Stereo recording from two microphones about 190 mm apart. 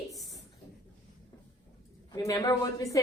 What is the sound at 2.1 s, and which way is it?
Speech, 20° left (ahead or behind).